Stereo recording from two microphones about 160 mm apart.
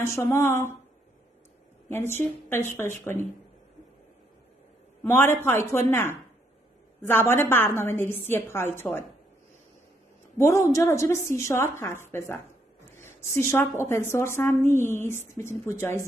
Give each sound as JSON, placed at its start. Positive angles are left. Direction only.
{"t": 0.0, "sound": "a woman's voice", "side_deg": 15}
{"t": 1.9, "sound": "a woman's voice", "side_deg": 15}
{"t": 5.0, "sound": "a woman's voice", "side_deg": 15}
{"t": 10.3, "sound": "a woman's voice", "side_deg": 20}